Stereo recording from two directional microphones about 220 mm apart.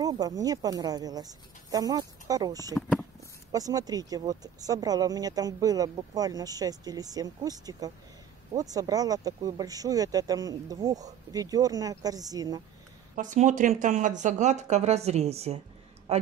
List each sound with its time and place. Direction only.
0.0 s speech: 15° right (ahead or behind)
13.1 s a man's voice: 35° right (ahead or behind)